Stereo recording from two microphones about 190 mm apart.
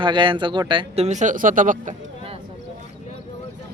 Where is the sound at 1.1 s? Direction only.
40° right (ahead or behind).